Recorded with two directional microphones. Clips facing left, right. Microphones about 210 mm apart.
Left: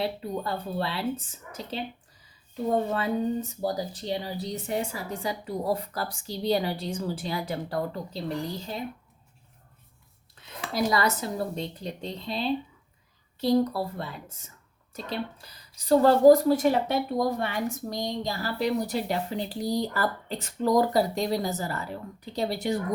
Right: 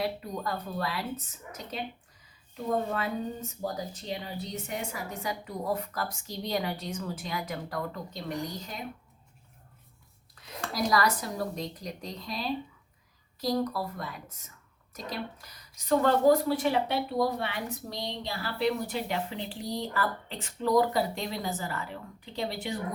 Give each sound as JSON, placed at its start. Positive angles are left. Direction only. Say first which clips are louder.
{"t": 0.0, "sound": "speech", "louder": "left 2 dB", "side_deg": 30}
{"t": 10.7, "sound": "speech", "louder": "left 2 dB", "side_deg": 25}